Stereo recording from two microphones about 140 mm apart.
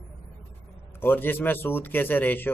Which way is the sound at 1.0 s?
15° left (ahead or behind).